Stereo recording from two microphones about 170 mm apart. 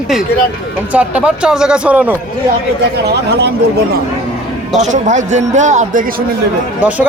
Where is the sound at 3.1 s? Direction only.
75° right (ahead or behind).